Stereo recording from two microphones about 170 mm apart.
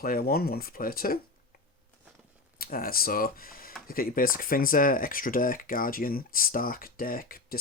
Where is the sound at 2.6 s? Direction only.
60° left (ahead or behind).